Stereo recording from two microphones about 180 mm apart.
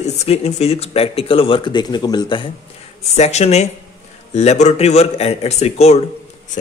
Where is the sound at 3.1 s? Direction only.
35° left (ahead or behind).